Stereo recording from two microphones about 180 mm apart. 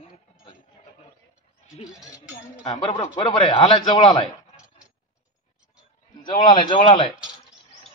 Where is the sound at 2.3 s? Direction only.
40° left (ahead or behind).